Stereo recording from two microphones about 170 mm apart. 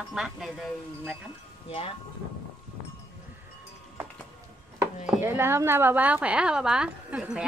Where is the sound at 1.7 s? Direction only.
35° left (ahead or behind).